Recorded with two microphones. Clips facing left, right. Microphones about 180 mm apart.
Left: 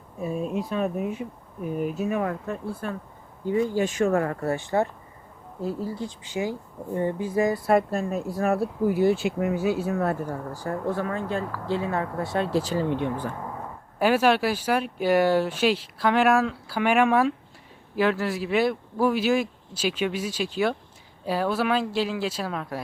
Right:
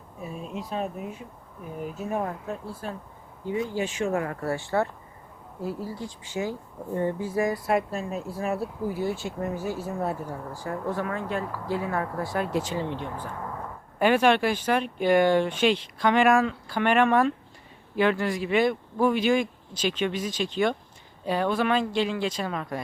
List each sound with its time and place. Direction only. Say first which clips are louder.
0.2 s speech: left 8 dB; 50° left (ahead or behind)
1.7 s speech: left 4 dB; 80° left; by 2.9 s 65° left (ahead or behind)
3.8 s speech: left 4 dB; 45° left (ahead or behind)
4.4 s a woman's voice: left 2 dB; 20° left (ahead or behind)
7.7 s speech: left 4 dB; 45° left (ahead or behind)
8.4 s speech: left 6 dB; 60° left (ahead or behind)
10.5 s speech: left 1 dB; 35° left (ahead or behind)
14.0 s speech: even; 5° left (ahead or behind)